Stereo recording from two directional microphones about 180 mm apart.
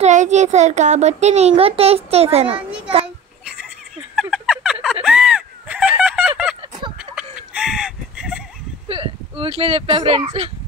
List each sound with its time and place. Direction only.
0.0 s a child's voice: 40° right (ahead or behind)
4.1 s turkey: centre (ahead or behind)
5.0 s a sound: 5° right (ahead or behind)
8.8 s speech: 30° right (ahead or behind)